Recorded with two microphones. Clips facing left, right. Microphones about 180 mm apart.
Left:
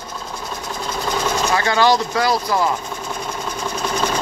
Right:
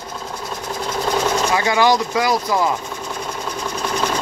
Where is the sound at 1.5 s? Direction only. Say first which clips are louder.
Left 1 dB; 15° right (ahead or behind).